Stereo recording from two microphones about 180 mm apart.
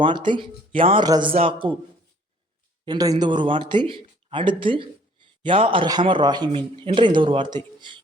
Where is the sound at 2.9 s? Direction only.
20° right (ahead or behind).